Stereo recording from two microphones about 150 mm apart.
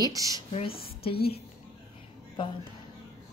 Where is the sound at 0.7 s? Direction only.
90° left.